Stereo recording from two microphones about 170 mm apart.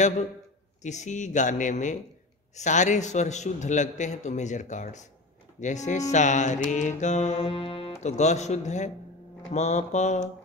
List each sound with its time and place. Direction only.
0.8 s a man's voice: 45° left (ahead or behind)
7.4 s music: 30° left (ahead or behind)
8.0 s a man's voice: 40° left (ahead or behind)